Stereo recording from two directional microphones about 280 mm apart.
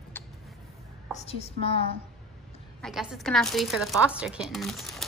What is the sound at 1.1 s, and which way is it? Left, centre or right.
Speech, left.